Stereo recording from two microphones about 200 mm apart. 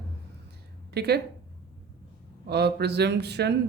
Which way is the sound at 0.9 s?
55° right (ahead or behind).